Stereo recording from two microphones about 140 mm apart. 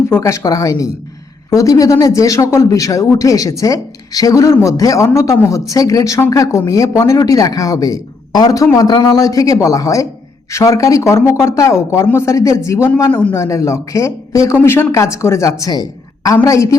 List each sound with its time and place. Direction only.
0.1 s speech: 20° left (ahead or behind)